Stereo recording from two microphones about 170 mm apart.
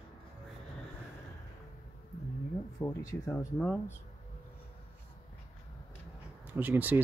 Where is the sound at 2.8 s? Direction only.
20° left (ahead or behind).